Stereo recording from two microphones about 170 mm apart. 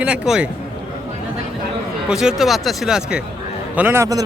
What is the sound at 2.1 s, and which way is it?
Speech, 5° right (ahead or behind).